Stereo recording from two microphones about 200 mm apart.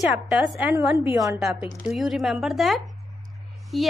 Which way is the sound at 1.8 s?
Centre (ahead or behind).